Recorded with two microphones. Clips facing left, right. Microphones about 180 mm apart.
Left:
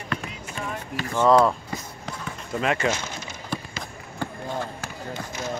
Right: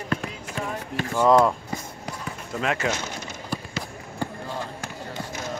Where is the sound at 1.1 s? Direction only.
15° right (ahead or behind).